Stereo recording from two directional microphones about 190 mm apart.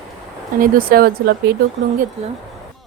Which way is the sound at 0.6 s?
50° right (ahead or behind).